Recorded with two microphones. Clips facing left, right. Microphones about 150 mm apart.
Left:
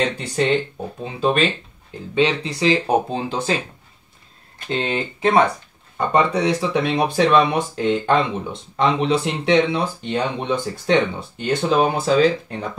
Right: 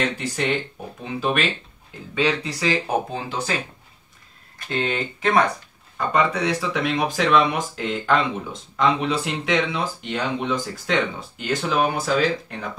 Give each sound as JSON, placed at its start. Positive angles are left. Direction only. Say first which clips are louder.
{"t": 1.0, "sound": "speech", "louder": "left 4 dB", "side_deg": 30}
{"t": 4.6, "sound": "speech", "louder": "left 2 dB", "side_deg": 25}